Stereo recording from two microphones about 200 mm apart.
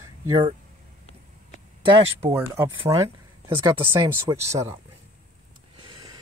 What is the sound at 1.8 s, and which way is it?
Speech, 25° right (ahead or behind).